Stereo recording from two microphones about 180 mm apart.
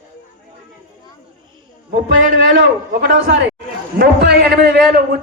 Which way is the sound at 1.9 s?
60° right (ahead or behind).